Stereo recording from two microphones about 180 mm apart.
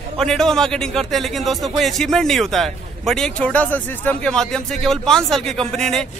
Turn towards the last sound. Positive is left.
turn(degrees=5)  # may be behind; listen again after turning